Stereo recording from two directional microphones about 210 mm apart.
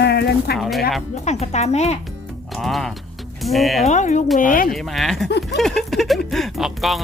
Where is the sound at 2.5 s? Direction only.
Centre (ahead or behind).